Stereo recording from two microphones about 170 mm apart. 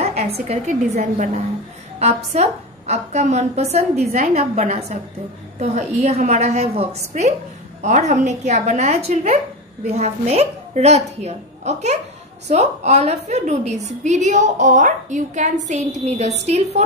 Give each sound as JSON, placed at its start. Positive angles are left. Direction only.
{"t": 0.0, "sound": "a woman's voice", "side_deg": -40}